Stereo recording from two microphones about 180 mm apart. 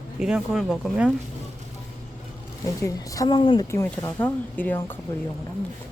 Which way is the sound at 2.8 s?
20° left (ahead or behind).